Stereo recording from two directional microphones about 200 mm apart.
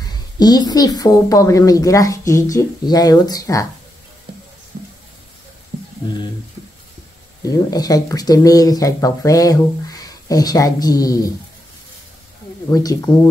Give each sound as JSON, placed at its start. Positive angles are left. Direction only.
{"t": 0.1, "sound": "speech", "side_deg": 20}
{"t": 4.7, "sound": "a sound", "side_deg": -45}
{"t": 7.4, "sound": "speech", "side_deg": 20}
{"t": 12.6, "sound": "speech", "side_deg": 15}